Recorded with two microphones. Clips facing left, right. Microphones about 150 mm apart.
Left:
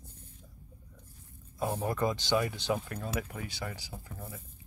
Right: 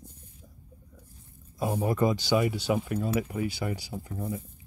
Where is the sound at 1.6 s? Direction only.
10° right (ahead or behind).